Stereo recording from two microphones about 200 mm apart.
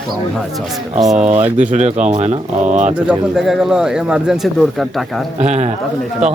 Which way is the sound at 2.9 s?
5° right (ahead or behind).